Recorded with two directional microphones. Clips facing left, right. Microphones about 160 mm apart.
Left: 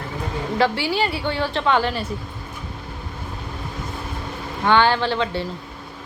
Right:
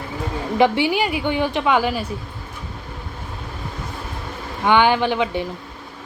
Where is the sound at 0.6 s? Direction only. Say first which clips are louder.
Right 4 dB; 15° right (ahead or behind).